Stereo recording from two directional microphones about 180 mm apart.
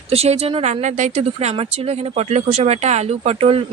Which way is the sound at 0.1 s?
35° right (ahead or behind).